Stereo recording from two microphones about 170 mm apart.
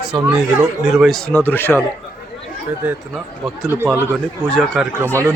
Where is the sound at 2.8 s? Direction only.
Centre (ahead or behind).